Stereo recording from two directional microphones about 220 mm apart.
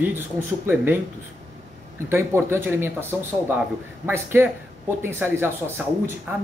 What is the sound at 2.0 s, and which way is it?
Speech, 10° right (ahead or behind).